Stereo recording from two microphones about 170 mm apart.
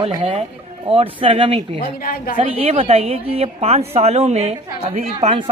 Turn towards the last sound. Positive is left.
turn(degrees=-35)  # may be behind; listen again after turning